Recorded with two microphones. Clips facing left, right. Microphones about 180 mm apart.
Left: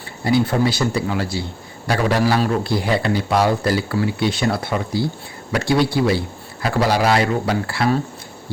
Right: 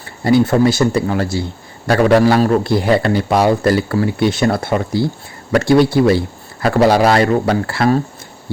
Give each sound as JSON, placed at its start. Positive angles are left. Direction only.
{"t": 0.3, "sound": "a man's voice", "side_deg": -50}